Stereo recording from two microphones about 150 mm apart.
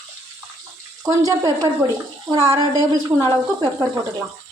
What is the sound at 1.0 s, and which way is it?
A woman's voice, 20° right (ahead or behind).